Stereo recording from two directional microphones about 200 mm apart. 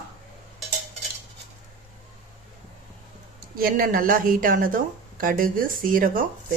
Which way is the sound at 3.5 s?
45° right (ahead or behind).